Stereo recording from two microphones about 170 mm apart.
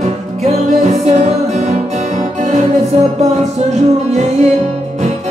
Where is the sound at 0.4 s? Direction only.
40° right (ahead or behind).